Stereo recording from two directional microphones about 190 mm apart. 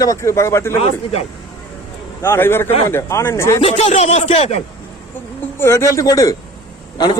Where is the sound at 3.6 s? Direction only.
35° left (ahead or behind).